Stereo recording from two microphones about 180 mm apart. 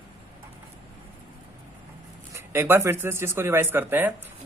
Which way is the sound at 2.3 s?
15° right (ahead or behind).